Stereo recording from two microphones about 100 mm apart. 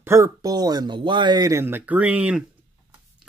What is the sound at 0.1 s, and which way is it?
Speech, 35° right (ahead or behind).